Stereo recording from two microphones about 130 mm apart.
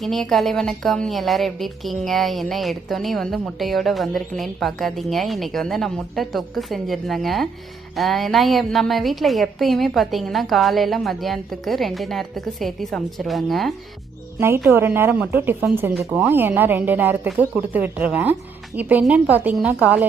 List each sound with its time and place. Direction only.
0.0 s a woman's voice: centre (ahead or behind)
14.3 s speech: 20° right (ahead or behind)